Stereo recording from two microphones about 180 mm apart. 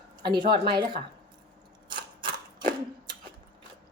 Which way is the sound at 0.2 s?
25° right (ahead or behind).